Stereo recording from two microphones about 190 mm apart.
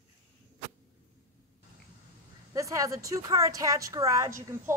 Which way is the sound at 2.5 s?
15° right (ahead or behind).